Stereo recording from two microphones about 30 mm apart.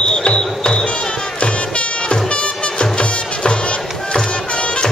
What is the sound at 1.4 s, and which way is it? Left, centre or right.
Music, left.